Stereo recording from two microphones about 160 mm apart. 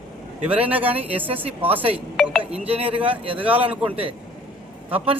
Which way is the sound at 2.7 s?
40° right (ahead or behind).